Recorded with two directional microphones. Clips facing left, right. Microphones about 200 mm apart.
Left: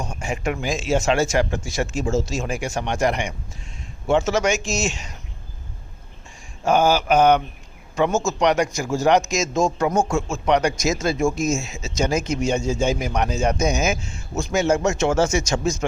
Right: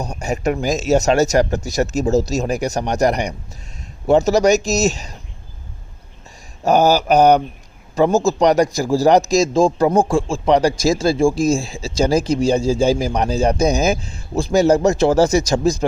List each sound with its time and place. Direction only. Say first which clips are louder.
0.0 s speech: right 5 dB; 40° right (ahead or behind)
6.7 s speech: right 4 dB; 40° right (ahead or behind)